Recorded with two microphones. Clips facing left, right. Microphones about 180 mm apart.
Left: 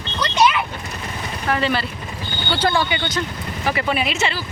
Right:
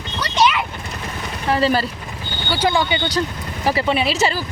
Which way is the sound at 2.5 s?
15° right (ahead or behind).